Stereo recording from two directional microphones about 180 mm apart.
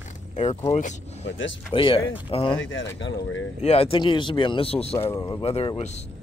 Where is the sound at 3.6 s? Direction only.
35° left (ahead or behind).